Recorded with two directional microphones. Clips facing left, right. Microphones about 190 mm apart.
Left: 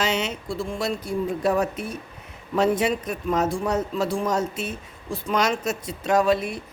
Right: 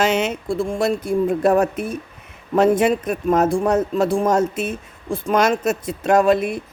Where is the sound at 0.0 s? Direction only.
50° right (ahead or behind).